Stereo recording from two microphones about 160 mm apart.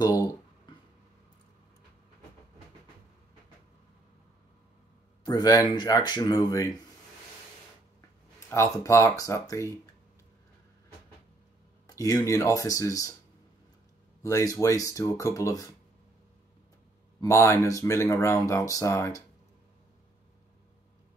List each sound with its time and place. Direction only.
0.0 s speech: 20° left (ahead or behind)
5.2 s speech: 25° left (ahead or behind)
8.5 s speech: 15° left (ahead or behind)
11.9 s speech: 20° left (ahead or behind)
14.2 s speech: 20° left (ahead or behind)
17.2 s speech: 15° left (ahead or behind)